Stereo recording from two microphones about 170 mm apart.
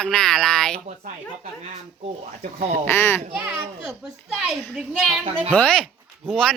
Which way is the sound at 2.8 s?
10° left (ahead or behind).